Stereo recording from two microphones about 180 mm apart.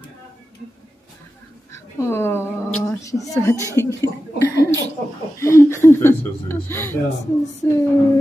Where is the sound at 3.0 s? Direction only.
20° left (ahead or behind).